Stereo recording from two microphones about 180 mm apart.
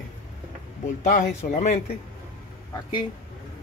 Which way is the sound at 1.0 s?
45° left (ahead or behind).